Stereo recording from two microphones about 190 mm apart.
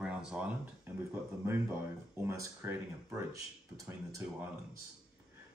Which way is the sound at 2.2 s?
15° right (ahead or behind).